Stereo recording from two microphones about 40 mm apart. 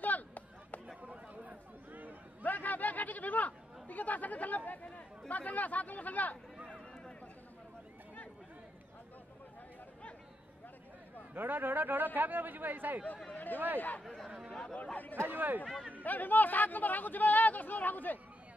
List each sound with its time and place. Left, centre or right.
0.0 s a sound: left
1.0 s chatter: right
1.9 s a sound: right
2.4 s chatter: left
5.3 s speech: left
11.3 s speech: right
13.3 s a sound: left
14.0 s speech: centre
14.5 s chatter: centre
15.2 s speech: right
16.0 s speech: left